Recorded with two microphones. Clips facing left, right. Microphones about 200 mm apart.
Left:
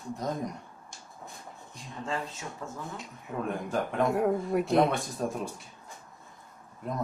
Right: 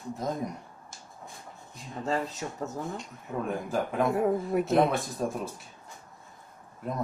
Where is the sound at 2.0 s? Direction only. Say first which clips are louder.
Right 5 dB; 40° right (ahead or behind).